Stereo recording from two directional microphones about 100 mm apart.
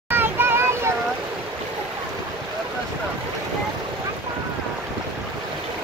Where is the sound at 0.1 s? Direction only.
20° right (ahead or behind).